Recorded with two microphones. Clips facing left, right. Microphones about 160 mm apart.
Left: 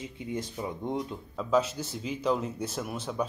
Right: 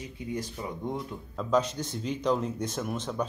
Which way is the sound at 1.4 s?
5° left (ahead or behind).